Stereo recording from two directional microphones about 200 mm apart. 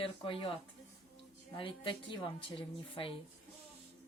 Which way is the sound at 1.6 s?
25° left (ahead or behind).